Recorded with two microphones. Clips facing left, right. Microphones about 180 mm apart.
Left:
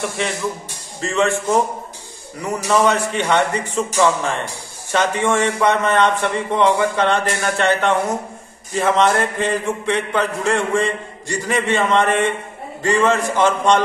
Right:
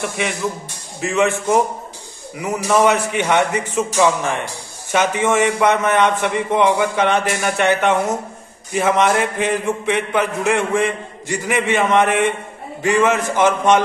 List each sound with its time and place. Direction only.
1.0 s a man's voice: 20° right (ahead or behind)
2.3 s speech: 5° right (ahead or behind)
2.8 s a man's voice: 15° right (ahead or behind)